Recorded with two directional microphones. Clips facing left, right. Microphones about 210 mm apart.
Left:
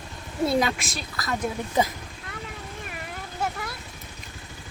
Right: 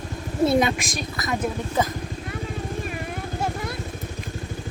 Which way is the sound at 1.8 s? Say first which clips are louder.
Even; 15° left (ahead or behind).